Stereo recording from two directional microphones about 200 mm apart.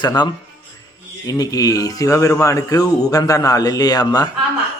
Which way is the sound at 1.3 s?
20° left (ahead or behind).